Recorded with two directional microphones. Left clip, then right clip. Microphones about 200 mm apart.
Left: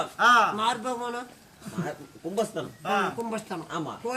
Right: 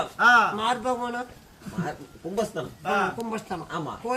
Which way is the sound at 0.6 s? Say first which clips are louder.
Right 2 dB; 5° right (ahead or behind).